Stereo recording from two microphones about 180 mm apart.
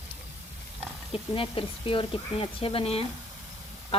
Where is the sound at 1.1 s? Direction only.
30° left (ahead or behind).